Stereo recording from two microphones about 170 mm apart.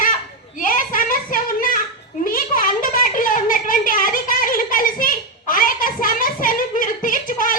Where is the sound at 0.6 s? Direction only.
55° left (ahead or behind).